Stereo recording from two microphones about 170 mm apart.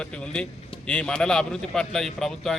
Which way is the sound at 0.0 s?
5° left (ahead or behind).